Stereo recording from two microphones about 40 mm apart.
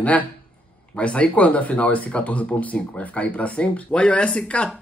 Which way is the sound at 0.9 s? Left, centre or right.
Left.